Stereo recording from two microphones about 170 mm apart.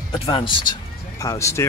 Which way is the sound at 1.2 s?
20° left (ahead or behind).